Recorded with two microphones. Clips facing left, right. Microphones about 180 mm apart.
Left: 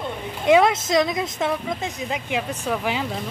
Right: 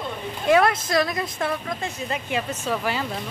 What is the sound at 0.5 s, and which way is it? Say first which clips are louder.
A woman's voice: left 2 dB; 20° left (ahead or behind).